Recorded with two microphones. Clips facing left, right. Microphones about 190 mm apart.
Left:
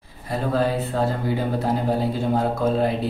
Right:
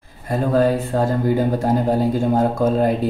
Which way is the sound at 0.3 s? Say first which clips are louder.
Right 5 dB; 45° right (ahead or behind).